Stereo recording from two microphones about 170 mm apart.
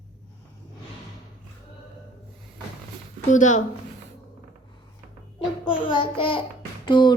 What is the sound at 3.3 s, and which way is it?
Speech, 45° left (ahead or behind).